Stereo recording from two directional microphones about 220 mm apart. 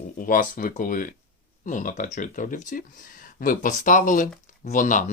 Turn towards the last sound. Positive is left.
turn(degrees=35)  # may be behind; listen again after turning